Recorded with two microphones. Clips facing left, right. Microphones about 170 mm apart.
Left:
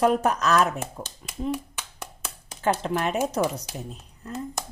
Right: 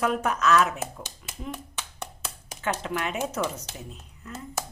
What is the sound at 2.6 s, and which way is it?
Speech, 35° left (ahead or behind).